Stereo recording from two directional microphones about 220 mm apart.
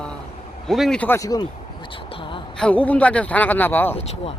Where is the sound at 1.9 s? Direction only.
25° left (ahead or behind).